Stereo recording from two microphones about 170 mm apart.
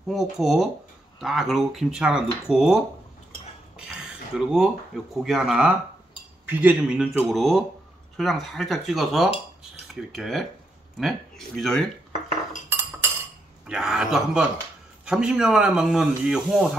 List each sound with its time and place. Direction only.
0.1 s speech: centre (ahead or behind)
9.6 s cutlery: centre (ahead or behind)
11.0 s speech: centre (ahead or behind)
13.7 s speech: 5° right (ahead or behind)